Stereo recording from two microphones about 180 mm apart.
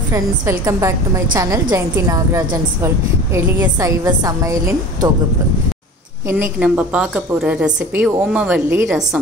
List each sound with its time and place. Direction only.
0.1 s a woman's voice: 15° right (ahead or behind)
6.2 s a woman's voice: 10° right (ahead or behind)